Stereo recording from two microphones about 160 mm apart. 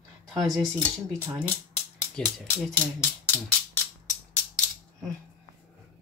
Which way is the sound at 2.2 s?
5° left (ahead or behind).